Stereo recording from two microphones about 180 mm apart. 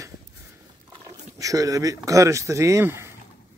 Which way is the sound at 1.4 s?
20° right (ahead or behind).